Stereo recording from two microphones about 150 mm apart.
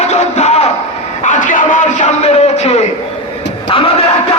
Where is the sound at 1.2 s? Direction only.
55° left (ahead or behind).